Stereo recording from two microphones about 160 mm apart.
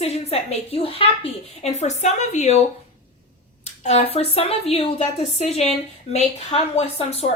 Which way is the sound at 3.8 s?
40° left (ahead or behind).